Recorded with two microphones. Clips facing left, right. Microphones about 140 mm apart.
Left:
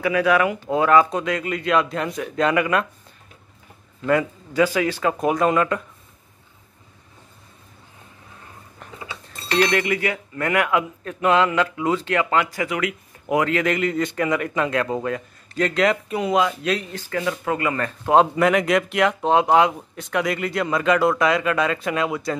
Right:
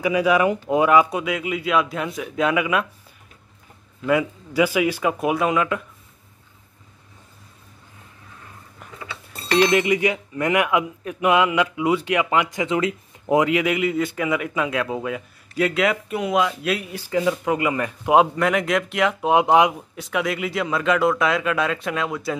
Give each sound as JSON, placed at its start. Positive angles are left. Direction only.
{"t": 0.0, "sound": "speech", "side_deg": -15}
{"t": 4.0, "sound": "speech", "side_deg": -10}
{"t": 9.6, "sound": "speech", "side_deg": -20}
{"t": 13.5, "sound": "speech", "side_deg": -10}
{"t": 18.3, "sound": "speech", "side_deg": 0}
{"t": 19.3, "sound": "speech", "side_deg": -15}
{"t": 19.7, "sound": "speech", "side_deg": -5}